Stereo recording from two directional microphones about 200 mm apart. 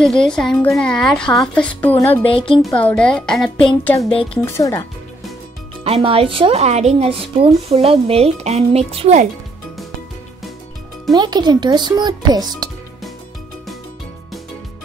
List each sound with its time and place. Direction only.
0.0 s speech: 5° left (ahead or behind)
2.0 s speech: 25° left (ahead or behind)
2.6 s speech: 5° left (ahead or behind)
5.9 s speech: 25° right (ahead or behind)
11.1 s a child's voice: 20° right (ahead or behind)